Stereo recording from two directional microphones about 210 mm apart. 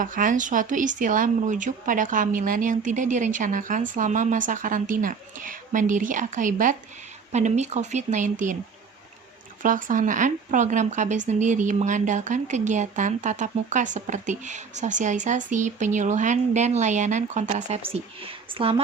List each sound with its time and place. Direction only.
0.0 s speech: 40° right (ahead or behind)
9.6 s speech: 40° right (ahead or behind)